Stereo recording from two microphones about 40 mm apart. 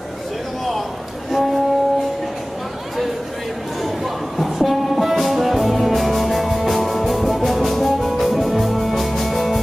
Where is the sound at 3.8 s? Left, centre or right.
Centre.